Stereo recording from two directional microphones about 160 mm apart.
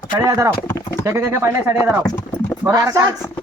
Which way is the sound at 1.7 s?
25° left (ahead or behind).